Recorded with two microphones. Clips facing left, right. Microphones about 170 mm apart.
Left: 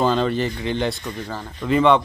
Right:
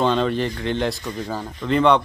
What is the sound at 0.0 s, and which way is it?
A man's voice, centre (ahead or behind).